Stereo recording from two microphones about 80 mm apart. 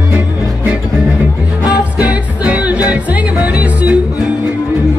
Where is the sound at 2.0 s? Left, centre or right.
Centre.